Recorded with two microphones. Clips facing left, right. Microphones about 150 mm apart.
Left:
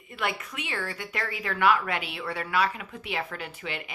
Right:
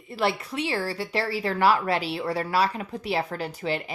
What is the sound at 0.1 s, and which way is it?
Speech, 35° right (ahead or behind).